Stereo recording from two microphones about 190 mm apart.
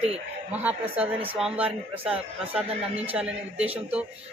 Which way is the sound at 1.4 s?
5° right (ahead or behind).